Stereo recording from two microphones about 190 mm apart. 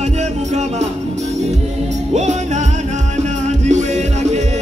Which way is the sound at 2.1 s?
40° right (ahead or behind).